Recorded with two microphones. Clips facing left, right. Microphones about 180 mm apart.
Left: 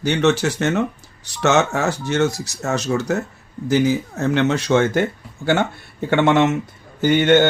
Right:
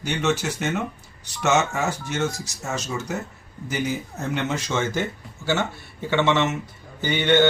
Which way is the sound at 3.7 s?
90° left.